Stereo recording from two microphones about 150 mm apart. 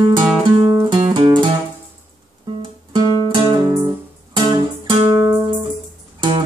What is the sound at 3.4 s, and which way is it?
Guitar, 30° right (ahead or behind).